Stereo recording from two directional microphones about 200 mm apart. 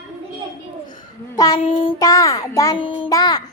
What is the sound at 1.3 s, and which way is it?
A child's voice, 20° left (ahead or behind).